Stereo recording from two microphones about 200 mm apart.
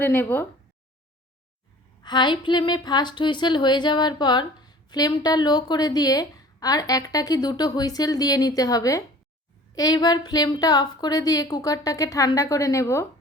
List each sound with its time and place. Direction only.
0.0 s a woman's voice: 10° left (ahead or behind)
2.0 s a woman's voice: 20° left (ahead or behind)